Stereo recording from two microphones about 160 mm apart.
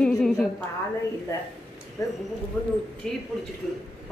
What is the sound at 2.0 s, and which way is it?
Speech, 20° left (ahead or behind).